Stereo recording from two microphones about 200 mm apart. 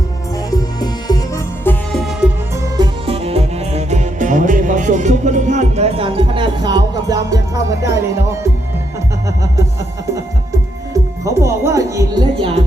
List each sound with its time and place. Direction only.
0.5 s music: 20° left (ahead or behind)
1.6 s music: centre (ahead or behind)
2.7 s music: 25° right (ahead or behind)
11.3 s music: 15° right (ahead or behind)